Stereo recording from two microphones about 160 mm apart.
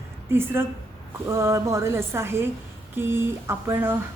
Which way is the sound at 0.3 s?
15° right (ahead or behind).